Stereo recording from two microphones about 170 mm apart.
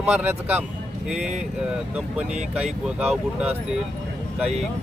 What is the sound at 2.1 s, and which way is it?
Speech, 5° right (ahead or behind).